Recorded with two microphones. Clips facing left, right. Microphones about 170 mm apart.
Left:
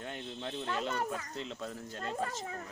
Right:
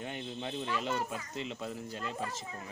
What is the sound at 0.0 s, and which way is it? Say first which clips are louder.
Speech: right 2 dB; 5° right (ahead or behind).